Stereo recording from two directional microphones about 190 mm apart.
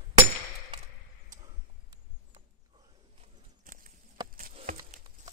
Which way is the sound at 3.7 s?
45° right (ahead or behind).